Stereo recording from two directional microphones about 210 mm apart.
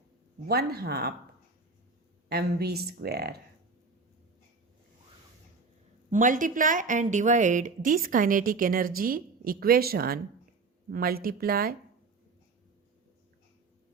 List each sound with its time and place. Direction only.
0.4 s speech: 50° right (ahead or behind)
2.3 s speech: 50° right (ahead or behind)
6.1 s a woman's voice: 40° right (ahead or behind)